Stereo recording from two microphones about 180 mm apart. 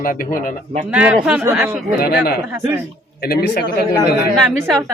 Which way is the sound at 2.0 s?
60° left (ahead or behind).